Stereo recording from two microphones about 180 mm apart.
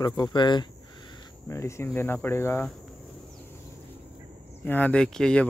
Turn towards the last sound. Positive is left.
turn(degrees=5)  # may be behind; listen again after turning